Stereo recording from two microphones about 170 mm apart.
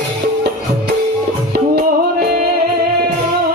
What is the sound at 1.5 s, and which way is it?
Music, 65° right (ahead or behind).